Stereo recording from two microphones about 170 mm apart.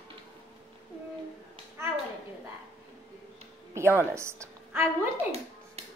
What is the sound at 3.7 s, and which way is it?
Speech, 15° right (ahead or behind).